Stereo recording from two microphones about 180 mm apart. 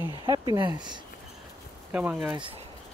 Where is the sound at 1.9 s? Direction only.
5° right (ahead or behind).